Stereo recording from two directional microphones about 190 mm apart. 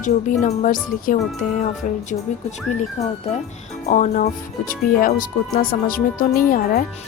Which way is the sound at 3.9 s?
45° left (ahead or behind).